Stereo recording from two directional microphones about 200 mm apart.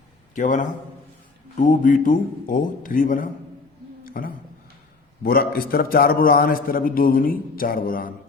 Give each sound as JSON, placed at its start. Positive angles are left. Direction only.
{"t": 0.3, "sound": "a man's voice", "side_deg": 40}
{"t": 4.0, "sound": "a sound", "side_deg": 45}
{"t": 5.2, "sound": "a man's voice", "side_deg": 50}